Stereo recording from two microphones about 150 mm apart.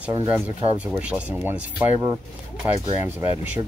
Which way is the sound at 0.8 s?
10° right (ahead or behind).